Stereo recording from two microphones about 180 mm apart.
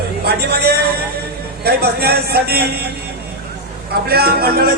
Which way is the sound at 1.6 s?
60° right (ahead or behind).